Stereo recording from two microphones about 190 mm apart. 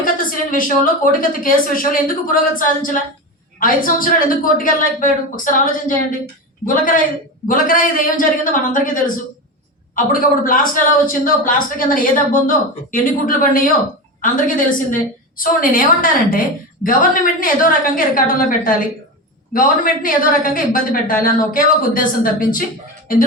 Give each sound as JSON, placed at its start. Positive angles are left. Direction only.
{"t": 0.0, "sound": "a sound", "side_deg": 45}
{"t": 1.0, "sound": "speech", "side_deg": 45}
{"t": 7.4, "sound": "speech", "side_deg": 45}